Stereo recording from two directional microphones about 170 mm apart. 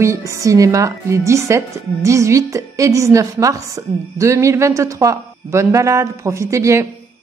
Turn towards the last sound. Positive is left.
turn(degrees=-15)  # may be behind; listen again after turning